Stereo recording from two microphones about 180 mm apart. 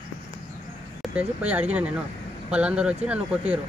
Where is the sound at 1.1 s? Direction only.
10° right (ahead or behind).